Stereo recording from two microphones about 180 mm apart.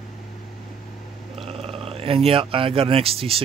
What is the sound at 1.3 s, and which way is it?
Speech, 35° right (ahead or behind).